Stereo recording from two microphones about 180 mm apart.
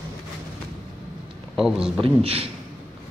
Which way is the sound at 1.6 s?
Centre (ahead or behind).